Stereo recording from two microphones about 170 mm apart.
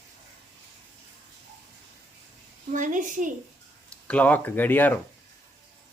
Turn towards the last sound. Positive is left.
turn(degrees=10)  # may be behind; listen again after turning